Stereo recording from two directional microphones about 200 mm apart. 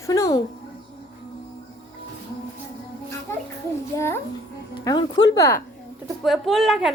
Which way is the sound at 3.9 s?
15° left (ahead or behind).